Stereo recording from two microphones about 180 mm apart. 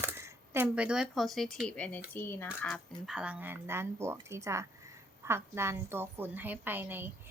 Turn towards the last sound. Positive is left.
turn(degrees=-10)  # may be behind; listen again after turning